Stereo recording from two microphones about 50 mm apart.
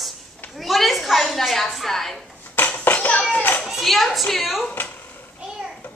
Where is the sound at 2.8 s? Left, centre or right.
Left.